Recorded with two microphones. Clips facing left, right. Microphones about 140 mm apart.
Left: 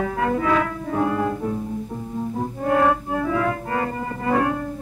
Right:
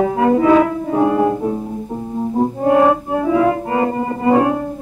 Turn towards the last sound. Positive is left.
turn(degrees=-20)  # may be behind; listen again after turning